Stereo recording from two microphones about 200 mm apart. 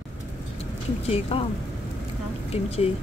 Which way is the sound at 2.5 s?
30° left (ahead or behind).